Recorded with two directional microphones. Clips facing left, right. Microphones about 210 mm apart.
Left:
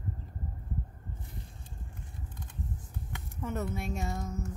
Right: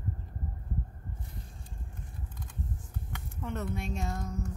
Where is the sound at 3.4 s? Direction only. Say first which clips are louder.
Left 1 dB; 5° left (ahead or behind).